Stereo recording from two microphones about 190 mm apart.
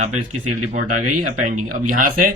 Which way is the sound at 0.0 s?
40° right (ahead or behind).